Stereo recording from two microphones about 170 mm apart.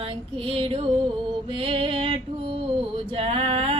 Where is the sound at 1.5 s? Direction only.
35° right (ahead or behind).